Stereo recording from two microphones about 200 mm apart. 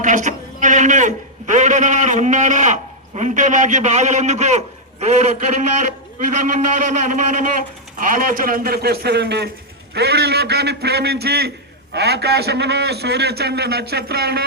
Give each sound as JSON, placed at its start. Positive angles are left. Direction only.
{"t": 0.0, "sound": "a man's voice", "side_deg": -40}